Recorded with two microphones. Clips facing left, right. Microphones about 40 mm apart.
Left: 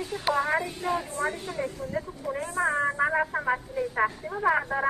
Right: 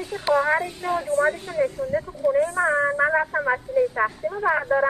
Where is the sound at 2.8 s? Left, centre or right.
Centre.